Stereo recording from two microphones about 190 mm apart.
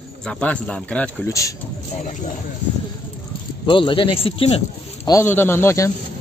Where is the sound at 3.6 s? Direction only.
25° left (ahead or behind).